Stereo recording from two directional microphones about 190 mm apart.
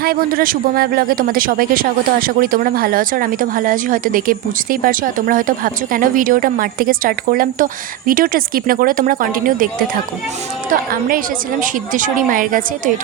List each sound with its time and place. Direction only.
0.0 s speech: 50° right (ahead or behind)
11.6 s speech: 45° right (ahead or behind)